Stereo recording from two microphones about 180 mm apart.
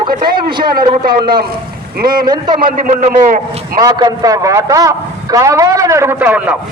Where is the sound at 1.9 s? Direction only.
55° right (ahead or behind).